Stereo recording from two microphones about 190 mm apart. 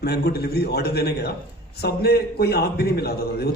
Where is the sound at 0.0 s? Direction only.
55° left (ahead or behind).